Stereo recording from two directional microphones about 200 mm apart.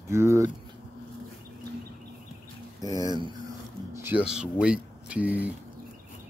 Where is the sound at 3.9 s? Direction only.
10° right (ahead or behind).